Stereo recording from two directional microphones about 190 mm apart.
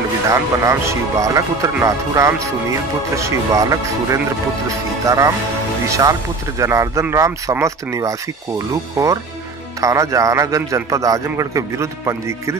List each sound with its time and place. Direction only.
0.3 s speech: 15° right (ahead or behind)
9.8 s speech: 15° right (ahead or behind)